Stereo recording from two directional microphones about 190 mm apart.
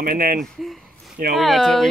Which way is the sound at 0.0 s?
50° right (ahead or behind).